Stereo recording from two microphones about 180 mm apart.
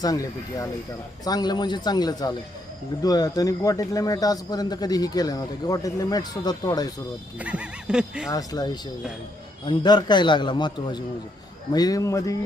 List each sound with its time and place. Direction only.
0.0 s a man's voice: 20° left (ahead or behind)
7.3 s speech: 5° right (ahead or behind)
8.3 s a man's voice: 20° left (ahead or behind)